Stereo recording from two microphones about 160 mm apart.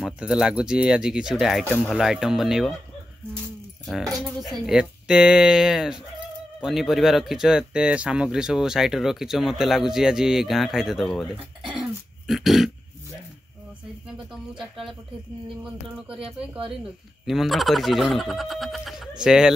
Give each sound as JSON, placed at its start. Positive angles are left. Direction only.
{"t": 0.0, "sound": "speech", "side_deg": -5}
{"t": 3.8, "sound": "speech", "side_deg": 0}
{"t": 16.2, "sound": "speech", "side_deg": -35}
{"t": 17.3, "sound": "speech", "side_deg": 0}